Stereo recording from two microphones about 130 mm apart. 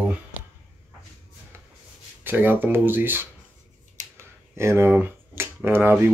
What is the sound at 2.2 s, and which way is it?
Speech, 15° right (ahead or behind).